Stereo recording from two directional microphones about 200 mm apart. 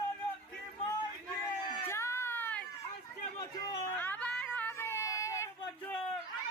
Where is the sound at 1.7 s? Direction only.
15° left (ahead or behind).